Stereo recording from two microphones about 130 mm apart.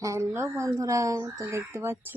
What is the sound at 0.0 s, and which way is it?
Speech, 25° right (ahead or behind).